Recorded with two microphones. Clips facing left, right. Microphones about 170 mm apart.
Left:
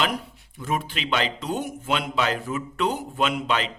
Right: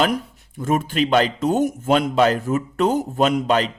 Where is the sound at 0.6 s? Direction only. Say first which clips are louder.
Right 8 dB; 45° right (ahead or behind).